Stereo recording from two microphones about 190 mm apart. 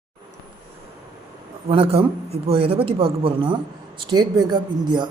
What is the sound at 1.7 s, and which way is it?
Speech, 30° right (ahead or behind).